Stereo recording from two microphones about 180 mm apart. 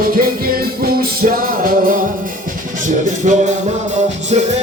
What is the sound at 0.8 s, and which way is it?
Music, 55° right (ahead or behind).